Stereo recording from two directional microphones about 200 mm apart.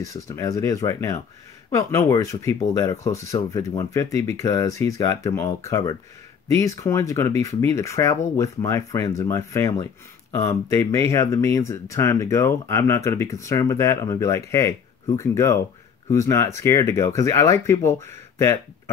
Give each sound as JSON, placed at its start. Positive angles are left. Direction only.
{"t": 0.0, "sound": "speech", "side_deg": 15}